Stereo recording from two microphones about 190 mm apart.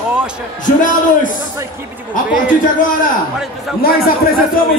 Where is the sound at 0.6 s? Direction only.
45° left (ahead or behind).